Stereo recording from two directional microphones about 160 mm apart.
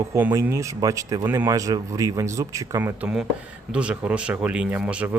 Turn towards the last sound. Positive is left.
turn(degrees=-10)  # may be behind; listen again after turning